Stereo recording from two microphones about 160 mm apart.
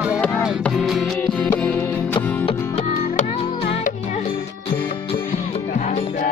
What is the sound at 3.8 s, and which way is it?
Music, 45° left (ahead or behind).